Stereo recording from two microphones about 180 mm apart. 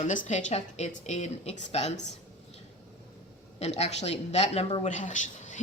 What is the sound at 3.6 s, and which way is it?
A woman's voice, 40° left (ahead or behind).